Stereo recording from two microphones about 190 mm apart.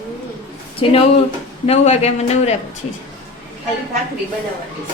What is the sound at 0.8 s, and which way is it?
A woman's voice, 30° left (ahead or behind).